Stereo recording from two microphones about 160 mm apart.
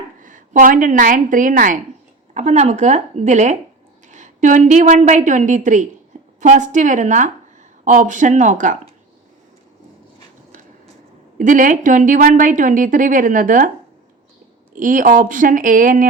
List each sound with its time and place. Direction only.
0.2 s a woman's voice: 55° right (ahead or behind)
2.3 s a woman's voice: 45° right (ahead or behind)
11.3 s speech: 55° right (ahead or behind)
14.8 s speech: 55° right (ahead or behind)